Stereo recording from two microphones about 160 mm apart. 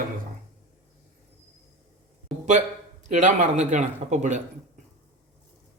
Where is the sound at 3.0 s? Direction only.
50° right (ahead or behind).